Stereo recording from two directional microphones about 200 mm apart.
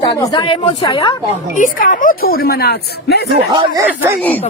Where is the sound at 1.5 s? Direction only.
40° left (ahead or behind).